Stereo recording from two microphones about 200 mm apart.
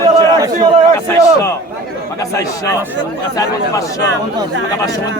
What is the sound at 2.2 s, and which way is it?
Speech, 15° left (ahead or behind).